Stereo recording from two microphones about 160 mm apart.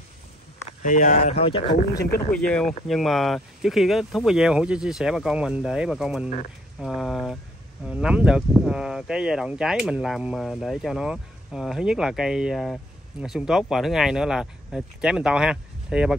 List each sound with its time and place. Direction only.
0.8 s speech: 50° left (ahead or behind); by 1.8 s 35° left (ahead or behind)
2.3 s speech: 5° left (ahead or behind)